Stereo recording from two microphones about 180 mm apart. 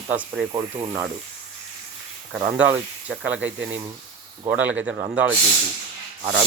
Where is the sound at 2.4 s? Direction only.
10° right (ahead or behind).